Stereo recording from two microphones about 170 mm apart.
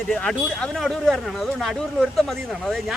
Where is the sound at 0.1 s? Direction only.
5° left (ahead or behind).